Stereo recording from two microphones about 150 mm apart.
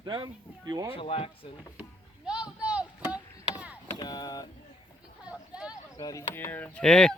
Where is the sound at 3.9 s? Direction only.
25° left (ahead or behind).